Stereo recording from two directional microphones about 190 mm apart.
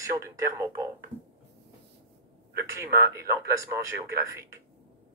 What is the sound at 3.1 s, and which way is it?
Speech, 15° right (ahead or behind).